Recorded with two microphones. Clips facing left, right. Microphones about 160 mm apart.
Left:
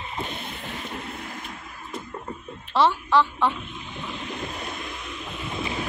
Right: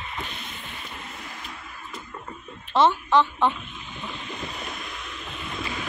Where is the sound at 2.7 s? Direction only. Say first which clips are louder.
Right 1 dB; 20° right (ahead or behind).